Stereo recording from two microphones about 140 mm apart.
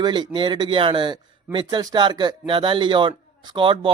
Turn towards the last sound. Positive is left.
turn(degrees=-40)  # may be behind; listen again after turning